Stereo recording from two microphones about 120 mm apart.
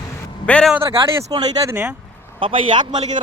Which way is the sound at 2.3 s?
45° right (ahead or behind).